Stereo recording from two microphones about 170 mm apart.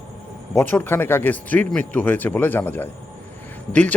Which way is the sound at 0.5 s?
10° left (ahead or behind).